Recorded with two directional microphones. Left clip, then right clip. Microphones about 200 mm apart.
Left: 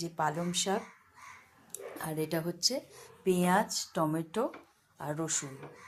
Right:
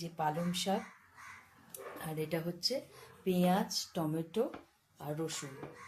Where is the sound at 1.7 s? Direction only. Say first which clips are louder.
Left 4 dB; 15° left (ahead or behind).